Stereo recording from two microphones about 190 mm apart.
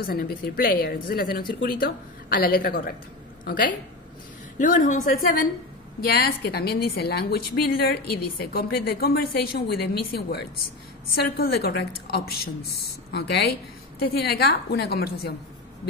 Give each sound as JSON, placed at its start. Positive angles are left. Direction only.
{"t": 0.0, "sound": "a woman's voice", "side_deg": 50}